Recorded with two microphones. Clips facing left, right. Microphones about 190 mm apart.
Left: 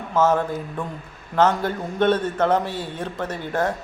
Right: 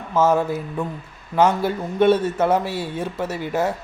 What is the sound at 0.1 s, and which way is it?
A man's voice, 10° right (ahead or behind).